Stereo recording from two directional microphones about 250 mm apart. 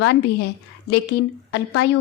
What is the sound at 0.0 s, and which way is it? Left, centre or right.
Speech, left.